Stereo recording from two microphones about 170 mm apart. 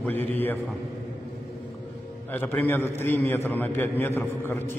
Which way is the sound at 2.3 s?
10° left (ahead or behind).